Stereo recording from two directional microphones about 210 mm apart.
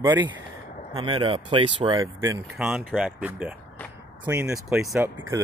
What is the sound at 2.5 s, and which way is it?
Speech, 5° right (ahead or behind).